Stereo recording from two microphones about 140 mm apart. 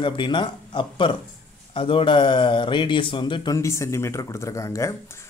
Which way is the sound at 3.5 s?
20° left (ahead or behind).